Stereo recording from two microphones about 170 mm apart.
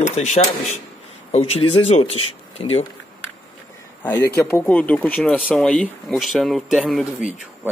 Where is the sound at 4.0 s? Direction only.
10° left (ahead or behind).